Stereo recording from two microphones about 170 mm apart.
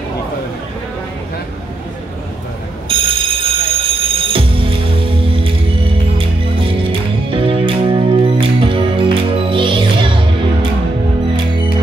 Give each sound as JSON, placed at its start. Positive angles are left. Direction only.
{"t": 2.9, "sound": "music", "side_deg": -30}